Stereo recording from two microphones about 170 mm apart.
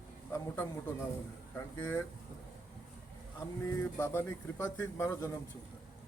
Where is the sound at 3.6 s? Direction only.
15° left (ahead or behind).